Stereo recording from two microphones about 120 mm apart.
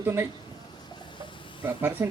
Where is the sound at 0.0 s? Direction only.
20° right (ahead or behind).